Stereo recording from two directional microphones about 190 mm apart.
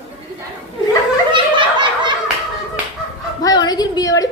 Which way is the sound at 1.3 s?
25° right (ahead or behind).